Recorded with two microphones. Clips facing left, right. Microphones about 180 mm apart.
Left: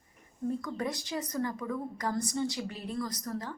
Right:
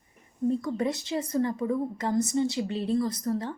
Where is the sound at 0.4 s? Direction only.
25° right (ahead or behind).